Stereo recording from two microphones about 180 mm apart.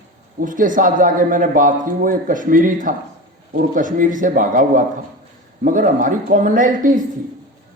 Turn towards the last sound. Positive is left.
turn(degrees=-45)  # may be behind; listen again after turning